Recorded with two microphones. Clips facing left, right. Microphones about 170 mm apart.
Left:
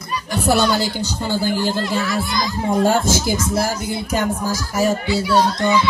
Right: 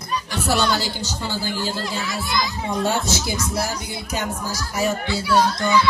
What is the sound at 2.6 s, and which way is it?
Speech, 50° left (ahead or behind).